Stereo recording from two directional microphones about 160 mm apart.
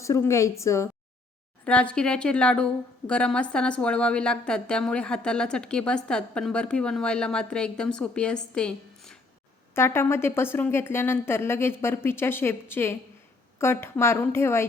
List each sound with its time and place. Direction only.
0.0 s a woman's voice: 20° left (ahead or behind)
1.6 s a woman's voice: 5° left (ahead or behind)
9.7 s a woman's voice: 15° left (ahead or behind)